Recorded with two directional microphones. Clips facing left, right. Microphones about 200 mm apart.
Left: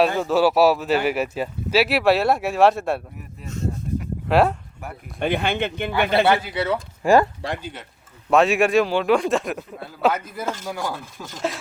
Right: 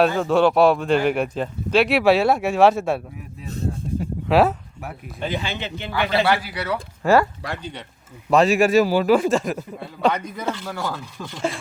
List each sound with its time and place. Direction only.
0.0 s speech: centre (ahead or behind)
3.4 s a sound: 35° right (ahead or behind)
4.3 s speech: centre (ahead or behind)
5.2 s speech: 60° left (ahead or behind)
6.2 s speech: 25° left (ahead or behind)
7.6 s speech: 5° left (ahead or behind)
11.3 s speech: centre (ahead or behind)